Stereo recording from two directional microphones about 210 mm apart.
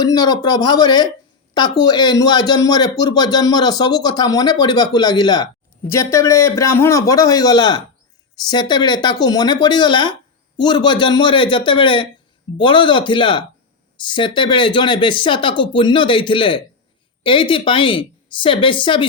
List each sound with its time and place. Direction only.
0.0 s a man's voice: 20° left (ahead or behind)